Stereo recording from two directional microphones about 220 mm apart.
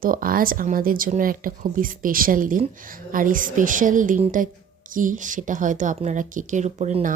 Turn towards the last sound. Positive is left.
turn(degrees=-30)  # may be behind; listen again after turning